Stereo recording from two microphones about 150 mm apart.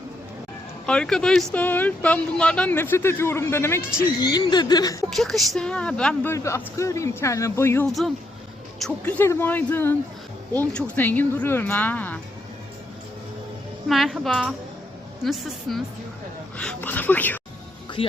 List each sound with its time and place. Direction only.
0.9 s speech: 5° left (ahead or behind)
4.2 s a man's voice: 25° left (ahead or behind)
5.1 s speech: centre (ahead or behind)
6.3 s a man's voice: 20° left (ahead or behind)
13.8 s speech: centre (ahead or behind)